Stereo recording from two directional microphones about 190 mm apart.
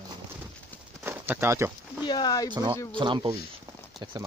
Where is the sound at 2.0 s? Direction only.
20° left (ahead or behind).